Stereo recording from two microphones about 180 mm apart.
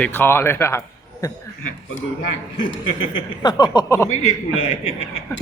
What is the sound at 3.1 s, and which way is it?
Speech, 25° left (ahead or behind).